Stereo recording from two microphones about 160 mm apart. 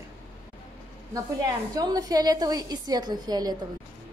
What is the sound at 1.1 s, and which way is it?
A woman's voice, 20° right (ahead or behind).